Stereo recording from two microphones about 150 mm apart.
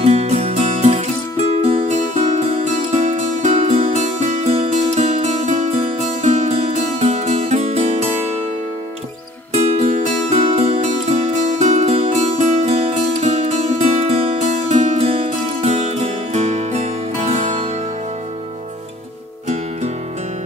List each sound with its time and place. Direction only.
0.0 s music: 45° right (ahead or behind)
2.9 s music: 45° right (ahead or behind)
9.5 s music: 45° right (ahead or behind)